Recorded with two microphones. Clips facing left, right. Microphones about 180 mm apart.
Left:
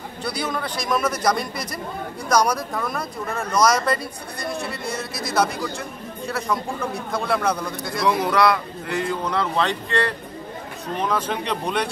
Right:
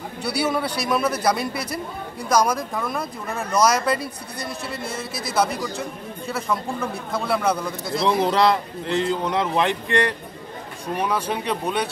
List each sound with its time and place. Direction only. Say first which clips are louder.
0.2 s a man's voice: right 4 dB; 10° right (ahead or behind)
2.7 s speech: even; centre (ahead or behind)
5.1 s speech: even; 55° right (ahead or behind)
5.6 s speech: right 1 dB; centre (ahead or behind)
8.0 s a man's voice: even; 30° right (ahead or behind); by 11.9 s 5° right (ahead or behind)